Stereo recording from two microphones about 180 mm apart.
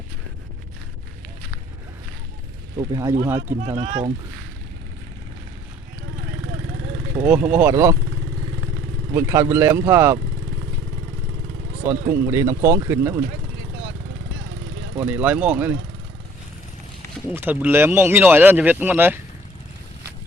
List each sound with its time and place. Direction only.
2.7 s speech: 20° right (ahead or behind)
7.2 s speech: 10° right (ahead or behind)
9.1 s speech: 15° right (ahead or behind)
11.9 s speech: 15° right (ahead or behind)
14.9 s speech: 10° right (ahead or behind)
17.3 s speech: 10° right (ahead or behind)